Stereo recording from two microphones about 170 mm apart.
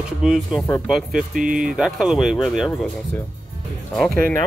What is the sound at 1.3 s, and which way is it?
Speech, 55° right (ahead or behind).